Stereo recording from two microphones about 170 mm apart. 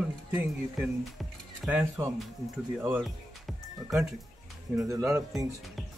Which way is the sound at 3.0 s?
Centre (ahead or behind).